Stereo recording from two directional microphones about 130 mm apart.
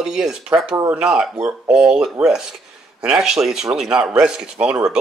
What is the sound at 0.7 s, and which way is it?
Speech, 25° right (ahead or behind).